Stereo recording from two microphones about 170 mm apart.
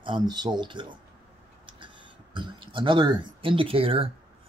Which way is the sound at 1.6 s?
30° right (ahead or behind).